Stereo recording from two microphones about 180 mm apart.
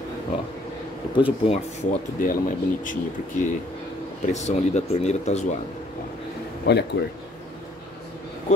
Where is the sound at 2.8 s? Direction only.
45° left (ahead or behind).